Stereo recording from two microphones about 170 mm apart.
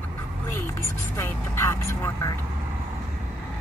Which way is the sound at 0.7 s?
15° left (ahead or behind).